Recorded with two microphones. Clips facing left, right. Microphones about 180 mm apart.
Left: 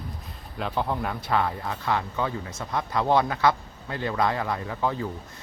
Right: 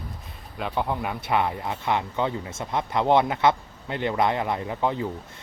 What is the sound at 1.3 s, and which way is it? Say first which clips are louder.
Speech: right 2 dB; 20° right (ahead or behind).